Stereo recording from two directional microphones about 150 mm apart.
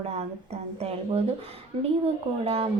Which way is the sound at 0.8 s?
40° right (ahead or behind).